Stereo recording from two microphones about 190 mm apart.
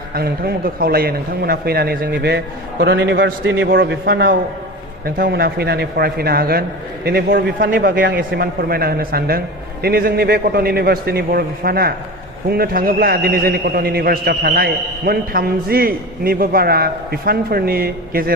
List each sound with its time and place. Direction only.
0.1 s a man's voice: 55° right (ahead or behind)